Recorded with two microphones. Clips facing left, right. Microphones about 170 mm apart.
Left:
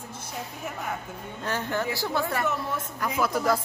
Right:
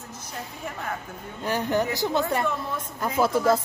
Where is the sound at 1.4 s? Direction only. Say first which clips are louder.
Right 5 dB; 15° right (ahead or behind).